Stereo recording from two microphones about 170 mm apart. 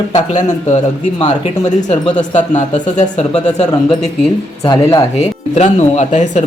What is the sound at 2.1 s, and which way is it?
Speech, 45° left (ahead or behind).